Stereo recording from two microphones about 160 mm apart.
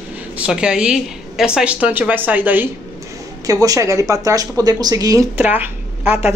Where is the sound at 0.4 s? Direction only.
5° right (ahead or behind); by 5.2 s 20° right (ahead or behind).